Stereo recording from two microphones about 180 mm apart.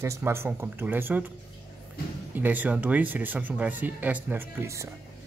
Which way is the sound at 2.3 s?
10° right (ahead or behind).